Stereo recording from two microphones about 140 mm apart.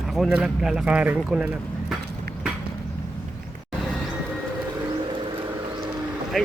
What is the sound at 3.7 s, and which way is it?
Vehicle, 5° left (ahead or behind).